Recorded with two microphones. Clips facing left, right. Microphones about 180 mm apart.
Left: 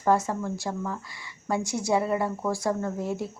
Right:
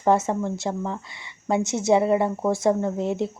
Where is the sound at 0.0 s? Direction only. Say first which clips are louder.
Right 3 dB; 25° right (ahead or behind).